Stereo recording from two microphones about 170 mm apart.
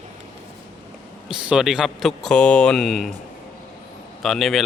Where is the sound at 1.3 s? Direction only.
5° right (ahead or behind).